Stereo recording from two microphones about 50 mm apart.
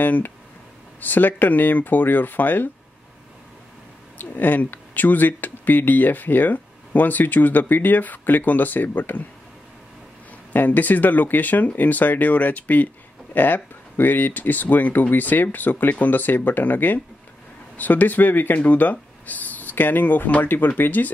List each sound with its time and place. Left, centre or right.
0.0 s speech: left
4.2 s speech: left
10.5 s speech: left